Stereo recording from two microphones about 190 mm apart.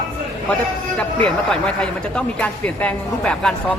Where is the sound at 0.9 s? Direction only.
5° left (ahead or behind).